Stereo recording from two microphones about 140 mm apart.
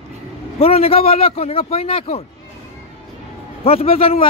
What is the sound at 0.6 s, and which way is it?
A man's voice, 45° left (ahead or behind).